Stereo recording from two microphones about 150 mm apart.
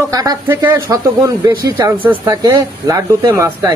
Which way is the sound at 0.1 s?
25° right (ahead or behind).